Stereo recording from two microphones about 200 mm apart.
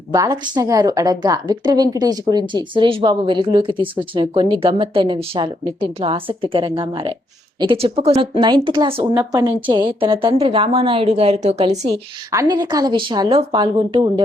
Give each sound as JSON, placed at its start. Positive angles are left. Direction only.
{"t": 0.1, "sound": "a woman's voice", "side_deg": -20}
{"t": 9.1, "sound": "a woman's voice", "side_deg": -15}
{"t": 12.3, "sound": "a woman's voice", "side_deg": -15}